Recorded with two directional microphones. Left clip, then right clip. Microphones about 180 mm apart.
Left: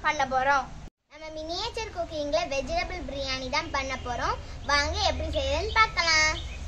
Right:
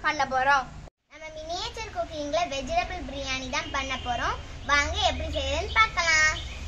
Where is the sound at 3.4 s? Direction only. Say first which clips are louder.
Left 2 dB; 40° left (ahead or behind).